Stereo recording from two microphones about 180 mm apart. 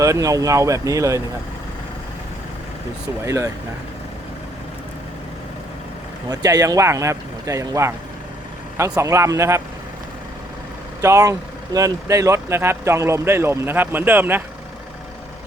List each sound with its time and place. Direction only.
0.0 s speech: 20° right (ahead or behind)
3.2 s speech: 15° right (ahead or behind)
6.2 s speech: 20° right (ahead or behind)
11.0 s speech: 15° right (ahead or behind)